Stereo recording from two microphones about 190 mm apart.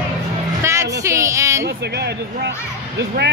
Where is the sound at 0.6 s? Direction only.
15° right (ahead or behind).